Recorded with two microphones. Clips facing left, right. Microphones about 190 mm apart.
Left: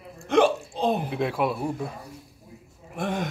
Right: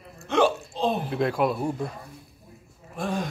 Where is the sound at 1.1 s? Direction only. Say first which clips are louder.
Right 2 dB; 5° left (ahead or behind).